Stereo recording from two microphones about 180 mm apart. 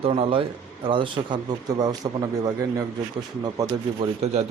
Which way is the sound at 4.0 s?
35° right (ahead or behind).